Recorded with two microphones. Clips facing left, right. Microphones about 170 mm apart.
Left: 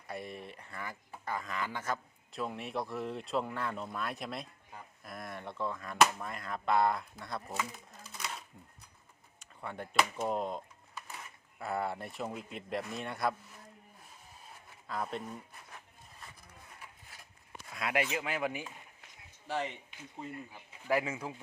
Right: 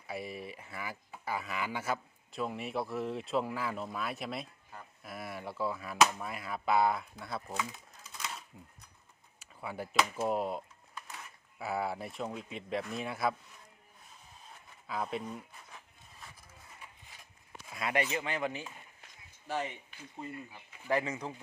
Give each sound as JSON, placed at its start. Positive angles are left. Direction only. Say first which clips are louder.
{"t": 0.1, "sound": "speech", "louder": "right 2 dB", "side_deg": -5}
{"t": 11.6, "sound": "speech", "louder": "right 1 dB", "side_deg": -5}
{"t": 14.8, "sound": "speech", "louder": "right 1 dB", "side_deg": 0}
{"t": 17.7, "sound": "speech", "louder": "even", "side_deg": 0}
{"t": 19.5, "sound": "speech", "louder": "even", "side_deg": -5}